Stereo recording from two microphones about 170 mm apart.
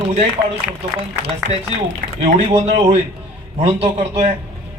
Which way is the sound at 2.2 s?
35° right (ahead or behind).